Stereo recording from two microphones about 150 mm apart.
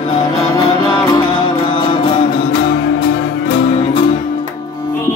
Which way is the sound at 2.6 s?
90° left.